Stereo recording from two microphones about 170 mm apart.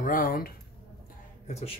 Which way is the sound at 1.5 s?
35° left (ahead or behind).